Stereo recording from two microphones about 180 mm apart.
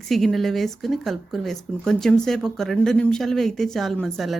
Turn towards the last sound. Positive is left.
turn(degrees=0)  # may be behind; listen again after turning